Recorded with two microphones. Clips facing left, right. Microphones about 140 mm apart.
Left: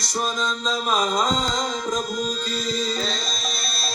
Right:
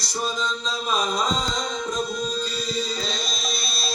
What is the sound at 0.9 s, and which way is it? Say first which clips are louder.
Speech: left 2 dB; 65° left (ahead or behind).